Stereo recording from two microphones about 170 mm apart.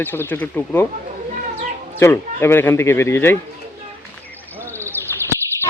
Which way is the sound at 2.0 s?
15° left (ahead or behind).